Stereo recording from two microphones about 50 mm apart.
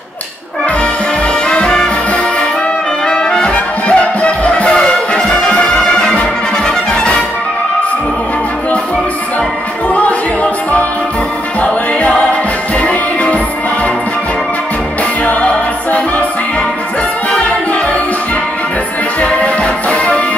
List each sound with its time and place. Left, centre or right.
1.5 s music: centre
3.1 s brass instrument: centre
3.5 s music: left
6.9 s brass instrument: left
9.9 s music: left
15.2 s music: left
19.2 s music: left